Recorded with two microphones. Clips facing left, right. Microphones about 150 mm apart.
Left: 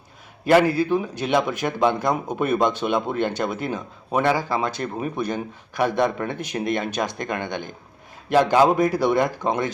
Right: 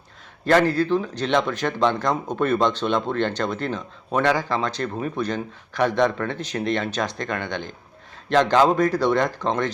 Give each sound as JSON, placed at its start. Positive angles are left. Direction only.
{"t": 0.4, "sound": "speech", "side_deg": 10}